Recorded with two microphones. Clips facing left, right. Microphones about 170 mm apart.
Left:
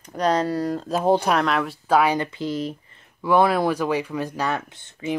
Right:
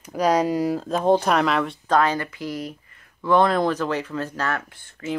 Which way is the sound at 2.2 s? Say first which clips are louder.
Left 4 dB; 25° left (ahead or behind).